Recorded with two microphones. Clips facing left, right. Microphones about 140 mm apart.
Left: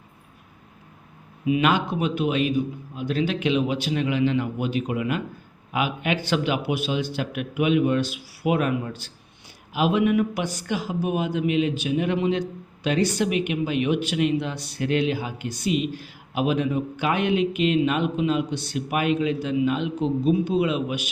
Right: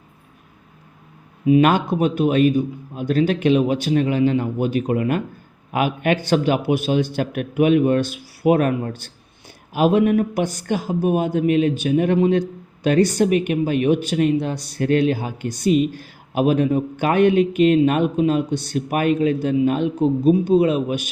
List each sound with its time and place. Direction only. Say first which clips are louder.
1.5 s speech: right 6 dB; 40° right (ahead or behind)